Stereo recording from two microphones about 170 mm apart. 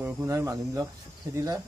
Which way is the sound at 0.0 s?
15° right (ahead or behind).